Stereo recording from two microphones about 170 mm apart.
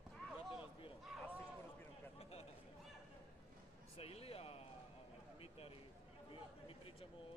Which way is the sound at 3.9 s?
35° left (ahead or behind).